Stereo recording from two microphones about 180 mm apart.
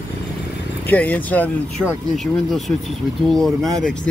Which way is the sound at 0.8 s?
10° left (ahead or behind).